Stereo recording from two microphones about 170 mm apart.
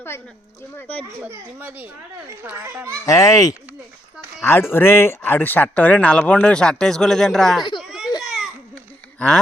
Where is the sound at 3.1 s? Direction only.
20° left (ahead or behind); by 7.6 s centre (ahead or behind).